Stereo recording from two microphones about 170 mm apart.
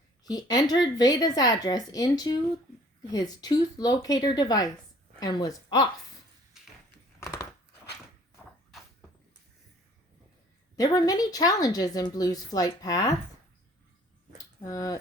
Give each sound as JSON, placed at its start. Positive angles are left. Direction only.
{"t": 0.3, "sound": "a woman's voice", "side_deg": 20}
{"t": 7.2, "sound": "biting", "side_deg": 15}
{"t": 10.8, "sound": "a woman's voice", "side_deg": 25}
{"t": 14.6, "sound": "a woman's voice", "side_deg": 20}